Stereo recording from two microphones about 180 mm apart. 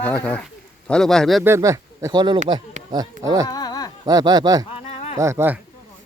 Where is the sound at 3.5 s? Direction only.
20° left (ahead or behind).